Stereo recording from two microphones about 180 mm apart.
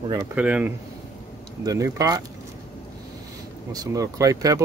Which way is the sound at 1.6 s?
20° right (ahead or behind).